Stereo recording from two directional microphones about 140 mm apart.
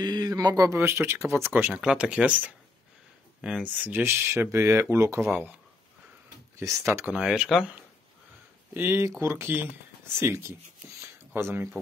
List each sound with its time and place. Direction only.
0.0 s speech: 30° right (ahead or behind)
6.6 s speech: 20° right (ahead or behind); by 7.6 s centre (ahead or behind)
8.7 s speech: 15° right (ahead or behind)